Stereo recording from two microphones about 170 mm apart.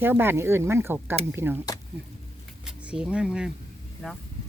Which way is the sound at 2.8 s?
5° right (ahead or behind).